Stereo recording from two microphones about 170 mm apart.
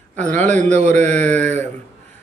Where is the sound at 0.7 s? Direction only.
45° right (ahead or behind).